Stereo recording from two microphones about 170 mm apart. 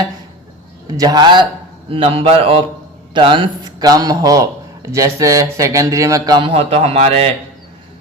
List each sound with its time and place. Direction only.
0.9 s a man's voice: 20° right (ahead or behind)